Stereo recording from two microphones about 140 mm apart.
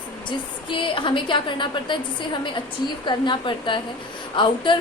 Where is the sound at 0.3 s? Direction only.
35° left (ahead or behind).